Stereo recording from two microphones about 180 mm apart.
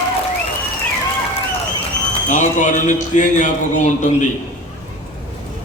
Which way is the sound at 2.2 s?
45° left (ahead or behind).